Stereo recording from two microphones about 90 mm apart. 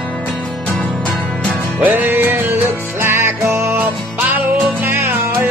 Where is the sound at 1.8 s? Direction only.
25° right (ahead or behind).